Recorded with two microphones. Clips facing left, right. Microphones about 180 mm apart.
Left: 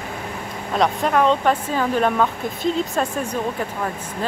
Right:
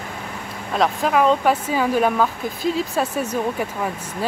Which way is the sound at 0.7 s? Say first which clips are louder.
Even; centre (ahead or behind).